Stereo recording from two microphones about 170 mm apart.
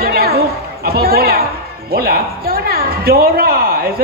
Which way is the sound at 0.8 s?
65° right (ahead or behind).